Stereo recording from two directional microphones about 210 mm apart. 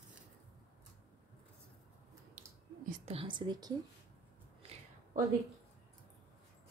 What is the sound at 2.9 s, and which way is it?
Speech, 30° right (ahead or behind).